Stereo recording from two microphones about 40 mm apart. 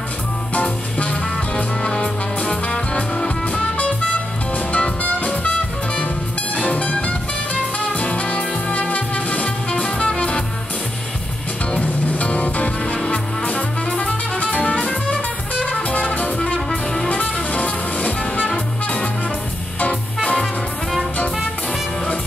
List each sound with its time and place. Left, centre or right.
0.6 s music: left
1.8 s music: left
4.6 s music: left
6.5 s music: left
12.1 s music: left
14.4 s music: left
16.3 s brass instrument: left
17.1 s music: left